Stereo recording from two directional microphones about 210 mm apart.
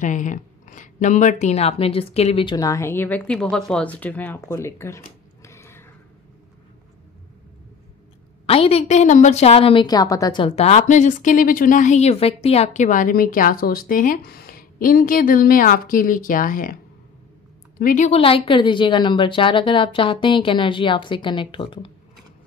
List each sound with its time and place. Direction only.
0.0 s speech: 35° left (ahead or behind); by 5.0 s 15° left (ahead or behind)
5.4 s a sound: 15° left (ahead or behind)
8.5 s a woman's voice: 30° left (ahead or behind)
17.7 s a woman's voice: 40° left (ahead or behind)